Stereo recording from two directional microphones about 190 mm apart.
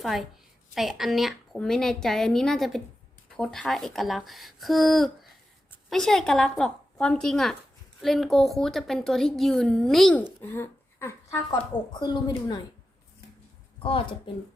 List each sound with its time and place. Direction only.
0.0 s a woman's voice: centre (ahead or behind)
10.4 s a sound: 10° left (ahead or behind)
11.5 s speech: 25° left (ahead or behind)
13.7 s a woman's voice: 30° left (ahead or behind)